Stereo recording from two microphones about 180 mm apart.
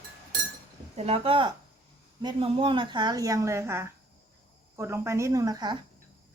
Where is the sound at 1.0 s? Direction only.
35° right (ahead or behind).